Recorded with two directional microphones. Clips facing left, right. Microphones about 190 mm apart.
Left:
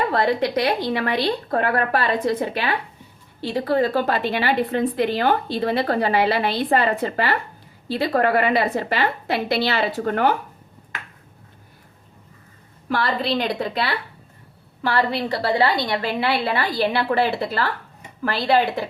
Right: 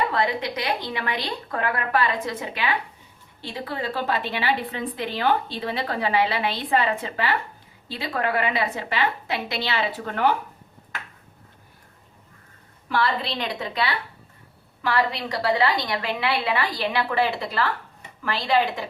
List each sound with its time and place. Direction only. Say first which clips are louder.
0.1 s a woman's voice: left 5 dB; 40° left (ahead or behind)
3.4 s a woman's voice: left 10 dB; 50° left (ahead or behind)
12.9 s a woman's voice: left 3 dB; 45° left (ahead or behind)
14.8 s a woman's voice: left 3 dB; 35° left (ahead or behind)
18.2 s a woman's voice: left 3 dB; 40° left (ahead or behind)